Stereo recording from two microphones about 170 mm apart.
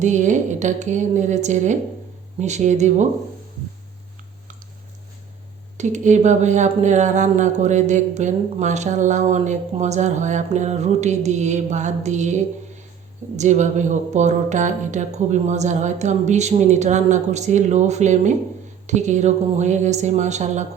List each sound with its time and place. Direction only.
0.0 s speech: 45° right (ahead or behind)
5.7 s speech: 45° right (ahead or behind)